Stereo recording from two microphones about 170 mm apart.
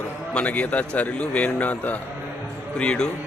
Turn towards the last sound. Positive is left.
turn(degrees=5)  # may be behind; listen again after turning